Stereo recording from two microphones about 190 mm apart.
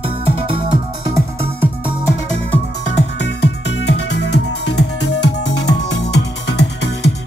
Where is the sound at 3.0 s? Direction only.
65° left (ahead or behind).